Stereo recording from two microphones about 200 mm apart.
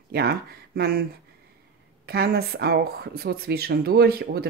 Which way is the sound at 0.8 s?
50° right (ahead or behind).